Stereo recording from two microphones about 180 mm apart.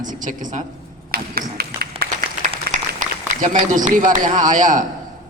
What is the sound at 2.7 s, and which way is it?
Applause, 60° right (ahead or behind).